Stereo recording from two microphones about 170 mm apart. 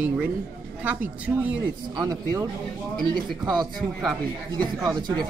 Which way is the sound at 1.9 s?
20° right (ahead or behind).